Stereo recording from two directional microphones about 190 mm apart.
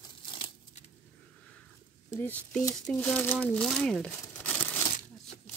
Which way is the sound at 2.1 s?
10° left (ahead or behind).